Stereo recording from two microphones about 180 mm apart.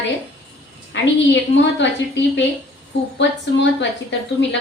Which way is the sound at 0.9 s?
90° left.